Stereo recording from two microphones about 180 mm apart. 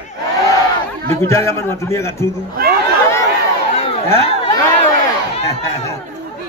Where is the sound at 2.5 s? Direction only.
55° right (ahead or behind).